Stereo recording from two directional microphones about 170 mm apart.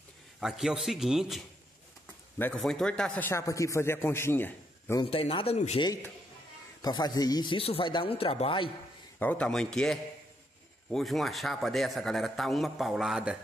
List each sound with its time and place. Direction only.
0.4 s a man's voice: centre (ahead or behind)
2.5 s a man's voice: 5° left (ahead or behind)
5.1 s speech: 35° left (ahead or behind)
6.8 s speech: 25° left (ahead or behind)
9.2 s a man's voice: 10° left (ahead or behind)